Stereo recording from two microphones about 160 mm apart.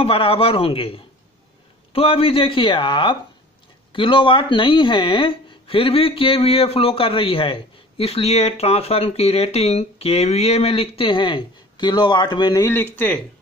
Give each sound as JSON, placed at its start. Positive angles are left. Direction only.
{"t": 0.0, "sound": "speech", "side_deg": 35}
{"t": 12.6, "sound": "speech", "side_deg": 15}